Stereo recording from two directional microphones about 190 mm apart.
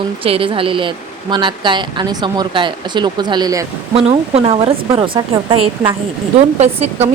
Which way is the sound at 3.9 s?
30° right (ahead or behind).